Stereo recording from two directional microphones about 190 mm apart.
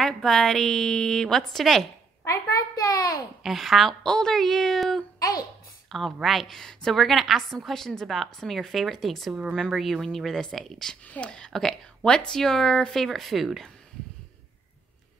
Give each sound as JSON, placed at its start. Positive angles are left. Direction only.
{"t": 0.0, "sound": "a woman's voice", "side_deg": 0}
{"t": 2.2, "sound": "a child's voice", "side_deg": 15}
{"t": 3.4, "sound": "a woman's voice", "side_deg": 0}